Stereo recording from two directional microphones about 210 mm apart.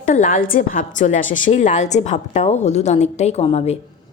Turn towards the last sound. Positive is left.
turn(degrees=30)  # may be behind; listen again after turning